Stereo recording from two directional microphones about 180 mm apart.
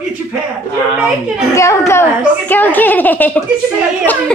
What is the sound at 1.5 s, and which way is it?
A woman's voice, 15° left (ahead or behind).